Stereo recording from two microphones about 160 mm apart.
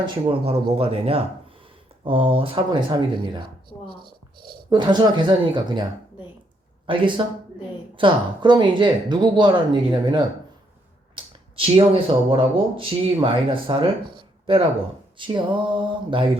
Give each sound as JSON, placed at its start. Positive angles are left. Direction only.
{"t": 0.0, "sound": "speech", "side_deg": -35}
{"t": 3.3, "sound": "a sound", "side_deg": -30}
{"t": 4.7, "sound": "speech", "side_deg": -30}
{"t": 6.8, "sound": "speech", "side_deg": -30}